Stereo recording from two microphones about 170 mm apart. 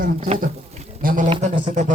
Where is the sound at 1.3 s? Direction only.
45° right (ahead or behind).